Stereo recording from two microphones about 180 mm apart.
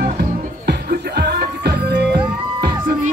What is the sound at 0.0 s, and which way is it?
Music, 60° right (ahead or behind).